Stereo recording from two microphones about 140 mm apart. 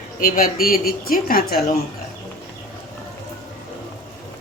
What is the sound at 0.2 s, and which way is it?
A woman's voice, 85° left.